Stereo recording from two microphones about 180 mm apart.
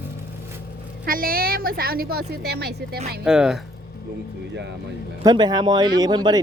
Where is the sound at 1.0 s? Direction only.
55° right (ahead or behind).